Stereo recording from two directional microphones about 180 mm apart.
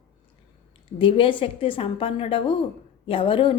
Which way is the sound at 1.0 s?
30° left (ahead or behind).